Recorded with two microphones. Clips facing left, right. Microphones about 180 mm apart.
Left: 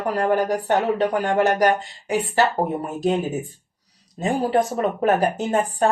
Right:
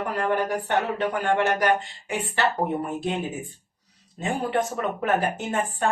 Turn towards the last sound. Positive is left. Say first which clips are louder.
# left 6 dB
turn(degrees=40)  # may be behind; listen again after turning